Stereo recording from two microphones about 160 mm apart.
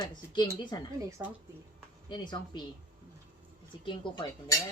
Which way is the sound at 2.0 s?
25° left (ahead or behind).